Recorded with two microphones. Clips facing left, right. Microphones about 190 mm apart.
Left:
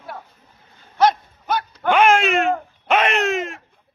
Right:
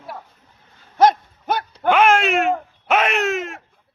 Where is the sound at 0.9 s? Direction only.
50° right (ahead or behind).